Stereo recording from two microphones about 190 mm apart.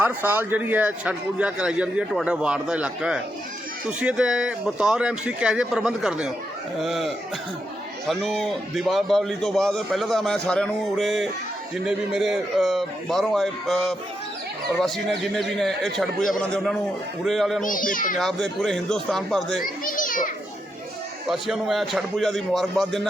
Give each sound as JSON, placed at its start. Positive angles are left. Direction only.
{"t": 0.0, "sound": "a man's voice", "side_deg": -10}
{"t": 17.6, "sound": "speech", "side_deg": 45}
{"t": 18.2, "sound": "a man's voice", "side_deg": 5}
{"t": 19.6, "sound": "children playing", "side_deg": 45}
{"t": 21.2, "sound": "a man's voice", "side_deg": 0}